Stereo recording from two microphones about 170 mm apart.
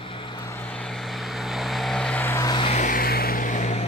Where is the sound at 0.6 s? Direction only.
5° left (ahead or behind).